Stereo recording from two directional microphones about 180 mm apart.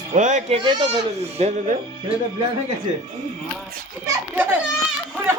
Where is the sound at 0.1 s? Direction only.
40° right (ahead or behind).